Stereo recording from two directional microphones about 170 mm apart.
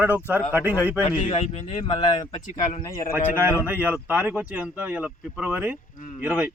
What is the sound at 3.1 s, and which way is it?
A man's voice, 10° right (ahead or behind).